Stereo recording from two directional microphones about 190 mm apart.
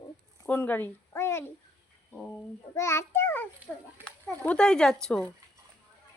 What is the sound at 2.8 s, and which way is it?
A child's voice, 15° left (ahead or behind).